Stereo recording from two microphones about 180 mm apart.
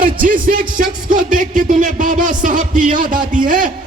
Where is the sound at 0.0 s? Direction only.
50° right (ahead or behind).